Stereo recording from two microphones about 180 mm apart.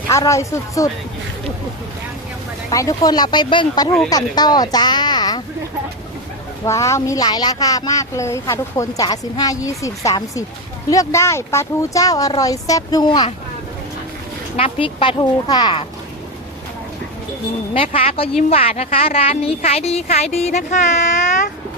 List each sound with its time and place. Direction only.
0.1 s speech: 15° left (ahead or behind)
2.6 s speech: 20° left (ahead or behind)
6.7 s speech: 15° left (ahead or behind)
14.5 s speech: 30° left (ahead or behind)
17.7 s a woman's voice: 30° left (ahead or behind)